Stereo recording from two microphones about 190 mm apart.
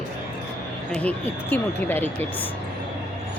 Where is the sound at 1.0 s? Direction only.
10° left (ahead or behind).